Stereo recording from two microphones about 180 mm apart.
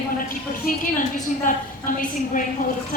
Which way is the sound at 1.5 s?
45° left (ahead or behind).